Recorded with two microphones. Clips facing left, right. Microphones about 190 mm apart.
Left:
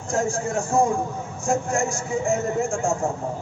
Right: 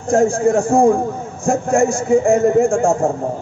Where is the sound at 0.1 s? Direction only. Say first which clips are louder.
Right 10 dB; 55° right (ahead or behind).